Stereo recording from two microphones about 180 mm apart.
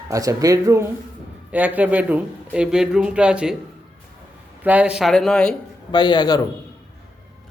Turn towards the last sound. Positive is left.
turn(degrees=25)  # may be behind; listen again after turning